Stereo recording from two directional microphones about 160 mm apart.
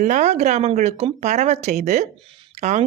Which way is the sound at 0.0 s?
50° right (ahead or behind).